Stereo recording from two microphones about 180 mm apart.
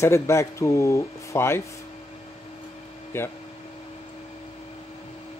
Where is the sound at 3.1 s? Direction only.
15° left (ahead or behind).